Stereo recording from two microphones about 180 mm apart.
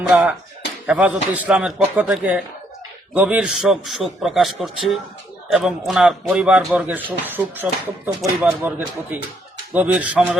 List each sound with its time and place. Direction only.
0.1 s a man's voice: 5° right (ahead or behind)